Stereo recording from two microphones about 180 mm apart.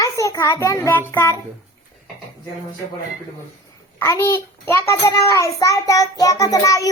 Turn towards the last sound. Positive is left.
turn(degrees=20)  # may be behind; listen again after turning